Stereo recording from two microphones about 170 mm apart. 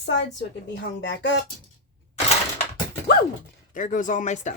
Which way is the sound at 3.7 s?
50° left (ahead or behind).